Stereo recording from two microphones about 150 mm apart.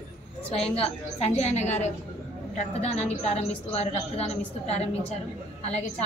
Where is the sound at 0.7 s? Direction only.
45° left (ahead or behind).